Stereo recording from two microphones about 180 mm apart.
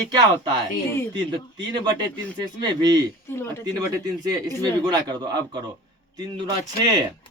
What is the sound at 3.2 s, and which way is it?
Speech, 15° left (ahead or behind).